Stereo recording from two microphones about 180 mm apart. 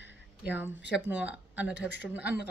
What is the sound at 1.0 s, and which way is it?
Speech, 10° right (ahead or behind).